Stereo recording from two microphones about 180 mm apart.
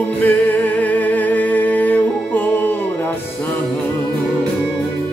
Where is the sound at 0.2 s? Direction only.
10° left (ahead or behind).